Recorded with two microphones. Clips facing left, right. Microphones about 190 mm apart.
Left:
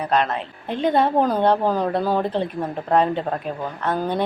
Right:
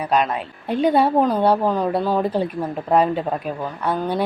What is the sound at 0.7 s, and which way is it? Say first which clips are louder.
Speech: right 2 dB; 10° right (ahead or behind).